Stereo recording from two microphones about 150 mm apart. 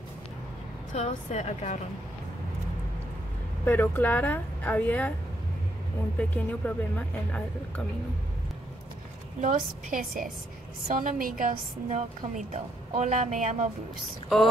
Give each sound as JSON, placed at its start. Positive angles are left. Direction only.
{"t": 0.9, "sound": "a woman's voice", "side_deg": 45}
{"t": 3.6, "sound": "a woman's voice", "side_deg": 15}
{"t": 6.1, "sound": "a woman's voice", "side_deg": 10}
{"t": 9.4, "sound": "a woman's voice", "side_deg": -60}